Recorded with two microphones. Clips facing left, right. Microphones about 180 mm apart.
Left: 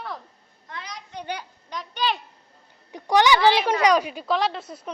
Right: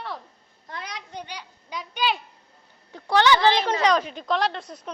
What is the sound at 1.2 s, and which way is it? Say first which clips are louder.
Speech: left 6 dB; 50° left (ahead or behind).